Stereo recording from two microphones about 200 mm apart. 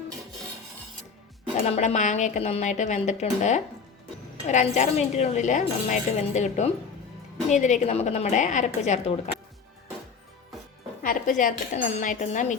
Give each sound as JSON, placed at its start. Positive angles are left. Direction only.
{"t": 1.6, "sound": "speech", "side_deg": 35}
{"t": 11.0, "sound": "speech", "side_deg": 45}